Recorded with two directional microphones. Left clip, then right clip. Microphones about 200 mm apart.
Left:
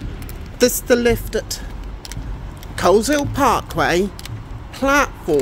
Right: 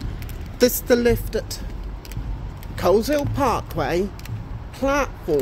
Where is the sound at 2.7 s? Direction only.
15° left (ahead or behind).